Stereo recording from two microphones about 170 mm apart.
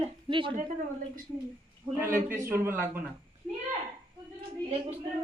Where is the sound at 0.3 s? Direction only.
30° right (ahead or behind).